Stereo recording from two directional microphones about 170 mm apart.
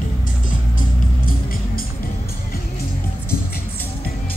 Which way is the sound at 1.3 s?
60° left (ahead or behind).